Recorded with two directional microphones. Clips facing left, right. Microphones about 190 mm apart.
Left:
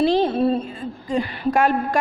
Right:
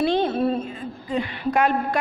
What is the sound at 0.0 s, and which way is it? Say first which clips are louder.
Speech: left 3 dB; 35° left (ahead or behind).